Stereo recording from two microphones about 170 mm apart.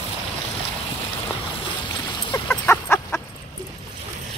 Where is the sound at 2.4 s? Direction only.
10° left (ahead or behind).